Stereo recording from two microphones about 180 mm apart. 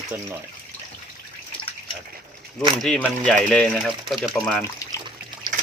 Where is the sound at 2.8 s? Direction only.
5° left (ahead or behind).